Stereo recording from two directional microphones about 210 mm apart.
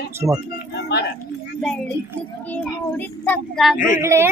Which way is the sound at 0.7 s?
50° left (ahead or behind).